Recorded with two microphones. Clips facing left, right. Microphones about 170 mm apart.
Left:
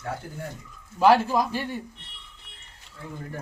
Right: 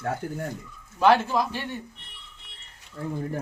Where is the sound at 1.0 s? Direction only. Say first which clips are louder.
Left 1 dB; 10° left (ahead or behind).